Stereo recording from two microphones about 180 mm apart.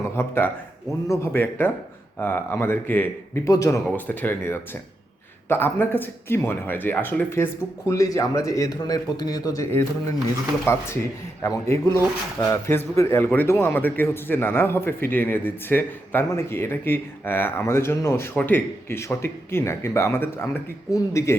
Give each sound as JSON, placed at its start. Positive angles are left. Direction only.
{"t": 0.2, "sound": "a man's voice", "side_deg": 15}